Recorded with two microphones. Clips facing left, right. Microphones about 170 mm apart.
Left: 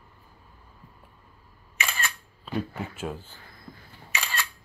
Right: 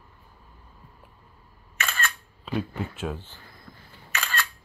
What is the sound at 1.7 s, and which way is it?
Single-lens reflex camera, 10° left (ahead or behind).